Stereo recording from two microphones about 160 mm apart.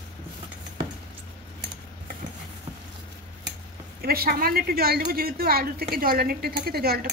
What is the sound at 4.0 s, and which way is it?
Speech, 70° right (ahead or behind).